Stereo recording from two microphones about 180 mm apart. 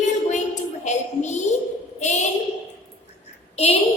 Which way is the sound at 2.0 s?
40° left (ahead or behind).